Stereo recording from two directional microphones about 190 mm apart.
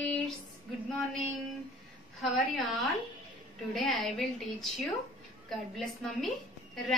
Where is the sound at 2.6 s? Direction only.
Centre (ahead or behind).